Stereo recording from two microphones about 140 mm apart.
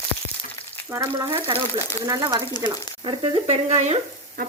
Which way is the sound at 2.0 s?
20° right (ahead or behind).